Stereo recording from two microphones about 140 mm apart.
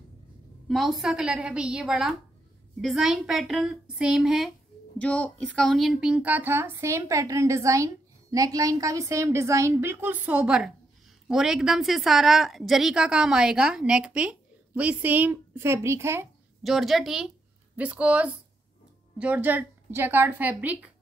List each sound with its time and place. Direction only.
0.7 s a woman's voice: centre (ahead or behind)
4.9 s a woman's voice: 10° left (ahead or behind); by 16.3 s 20° right (ahead or behind)
16.6 s a woman's voice: centre (ahead or behind)